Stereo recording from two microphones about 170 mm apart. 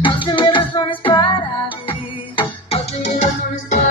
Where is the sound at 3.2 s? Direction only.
45° left (ahead or behind).